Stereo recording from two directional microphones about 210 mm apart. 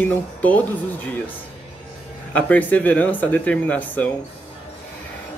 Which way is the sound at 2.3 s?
5° left (ahead or behind).